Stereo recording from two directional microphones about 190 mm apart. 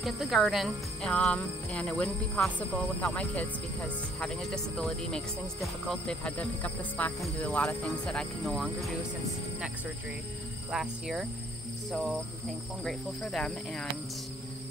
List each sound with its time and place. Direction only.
0.0 s speech: centre (ahead or behind)
10.7 s speech: centre (ahead or behind)